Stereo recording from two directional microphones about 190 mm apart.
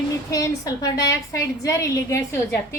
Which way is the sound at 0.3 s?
15° left (ahead or behind).